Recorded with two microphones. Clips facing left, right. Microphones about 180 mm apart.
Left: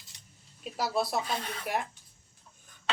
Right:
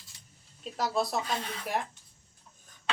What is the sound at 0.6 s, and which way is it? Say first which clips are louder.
Speech: even; 5° left (ahead or behind).